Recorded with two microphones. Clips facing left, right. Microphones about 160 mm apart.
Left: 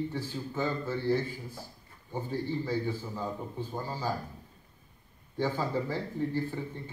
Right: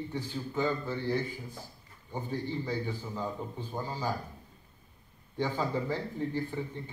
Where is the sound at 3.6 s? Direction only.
15° right (ahead or behind).